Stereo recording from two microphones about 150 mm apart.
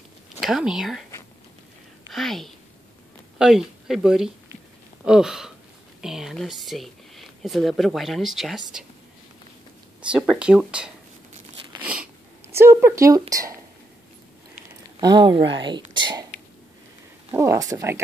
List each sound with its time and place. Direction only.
0.4 s speech: 5° right (ahead or behind)
2.1 s speech: centre (ahead or behind)
10.1 s speech: 5° right (ahead or behind)
11.8 s a sound: 10° right (ahead or behind)
12.5 s speech: 15° right (ahead or behind)
15.0 s speech: 30° right (ahead or behind)
17.3 s speech: 20° right (ahead or behind)